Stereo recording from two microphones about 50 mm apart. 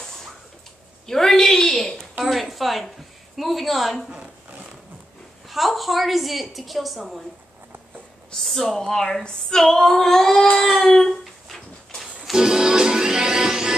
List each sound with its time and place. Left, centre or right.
1.0 s a sound: centre
2.2 s a woman's voice: centre
4.1 s zipper: right
5.5 s a woman's voice: centre
8.4 s speech: centre
10.6 s music: centre
12.2 s music: centre